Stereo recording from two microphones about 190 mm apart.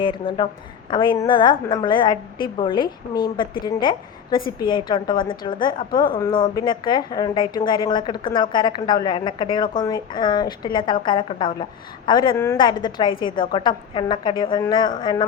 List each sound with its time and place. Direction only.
0.0 s speech: 25° left (ahead or behind)
5.1 s a woman's voice: 50° left (ahead or behind)
5.5 s speech: 25° left (ahead or behind)